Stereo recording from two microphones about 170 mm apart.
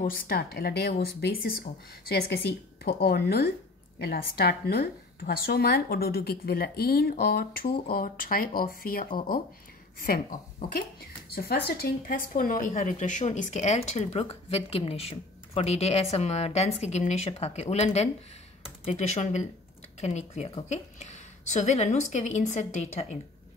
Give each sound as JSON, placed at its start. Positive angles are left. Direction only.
{"t": 0.0, "sound": "a woman's voice", "side_deg": 60}